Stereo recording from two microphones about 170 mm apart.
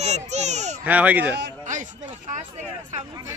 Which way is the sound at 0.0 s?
40° right (ahead or behind).